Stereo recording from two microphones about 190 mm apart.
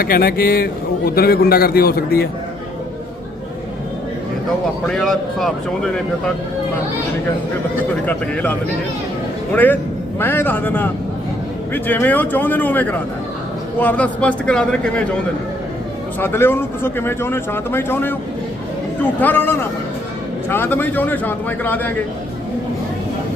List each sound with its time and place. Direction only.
0.0 s a man's voice: 50° left (ahead or behind)
4.9 s speech: 5° left (ahead or behind)
8.0 s speech: 10° left (ahead or behind)
10.2 s speech: 10° left (ahead or behind)
16.2 s speech: 10° left (ahead or behind)
19.2 s speech: 10° left (ahead or behind)